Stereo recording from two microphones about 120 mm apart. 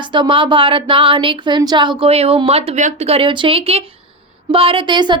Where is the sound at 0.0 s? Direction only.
40° right (ahead or behind).